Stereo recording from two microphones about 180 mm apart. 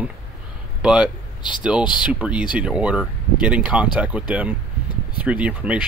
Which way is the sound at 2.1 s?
5° right (ahead or behind).